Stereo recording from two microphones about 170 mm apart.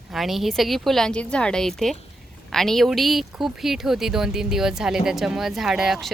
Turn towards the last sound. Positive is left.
turn(degrees=0)  # may be behind; listen again after turning